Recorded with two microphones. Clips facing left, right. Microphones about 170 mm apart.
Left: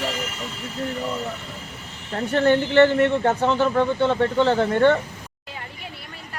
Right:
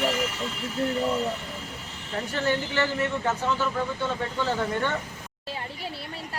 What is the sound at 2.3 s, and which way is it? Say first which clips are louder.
A man's voice: left 10 dB; 55° left (ahead or behind).